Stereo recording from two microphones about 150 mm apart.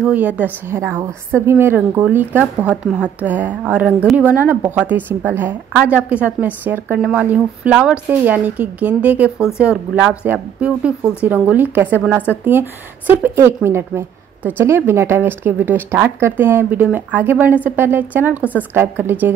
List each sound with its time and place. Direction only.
0.0 s a woman's voice: 10° right (ahead or behind)